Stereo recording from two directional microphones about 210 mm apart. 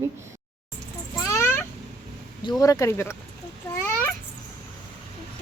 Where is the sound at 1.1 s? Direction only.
15° left (ahead or behind).